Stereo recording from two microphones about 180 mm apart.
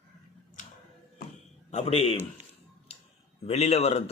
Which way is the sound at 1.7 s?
35° left (ahead or behind).